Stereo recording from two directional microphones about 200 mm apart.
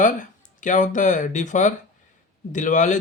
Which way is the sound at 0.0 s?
40° left (ahead or behind).